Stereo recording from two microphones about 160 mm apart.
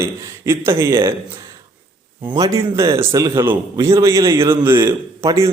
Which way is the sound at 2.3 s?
20° right (ahead or behind).